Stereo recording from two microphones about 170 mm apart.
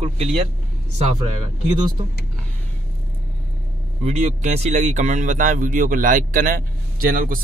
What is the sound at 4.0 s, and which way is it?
Speech, 40° right (ahead or behind).